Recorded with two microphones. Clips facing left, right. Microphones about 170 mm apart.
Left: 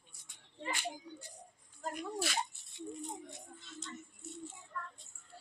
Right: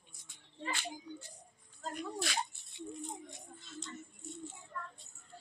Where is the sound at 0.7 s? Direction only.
15° left (ahead or behind).